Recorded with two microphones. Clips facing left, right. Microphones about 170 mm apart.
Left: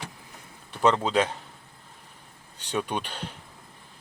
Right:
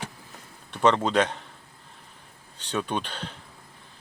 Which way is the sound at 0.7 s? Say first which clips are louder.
Right 1 dB; 5° left (ahead or behind).